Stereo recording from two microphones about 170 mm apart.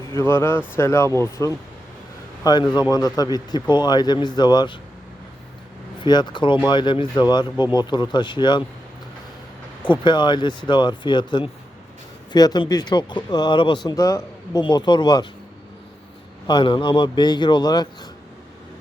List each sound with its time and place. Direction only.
0.2 s a man's voice: 15° left (ahead or behind)
6.0 s speech: 25° left (ahead or behind)
9.8 s speech: 30° left (ahead or behind)
16.5 s speech: 25° left (ahead or behind)